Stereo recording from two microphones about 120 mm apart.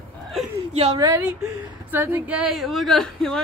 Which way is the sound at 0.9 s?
30° right (ahead or behind).